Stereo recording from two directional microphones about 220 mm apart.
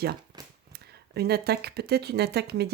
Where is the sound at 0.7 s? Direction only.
45° right (ahead or behind).